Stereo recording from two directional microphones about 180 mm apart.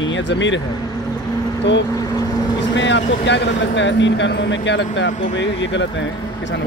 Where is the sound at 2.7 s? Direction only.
80° left.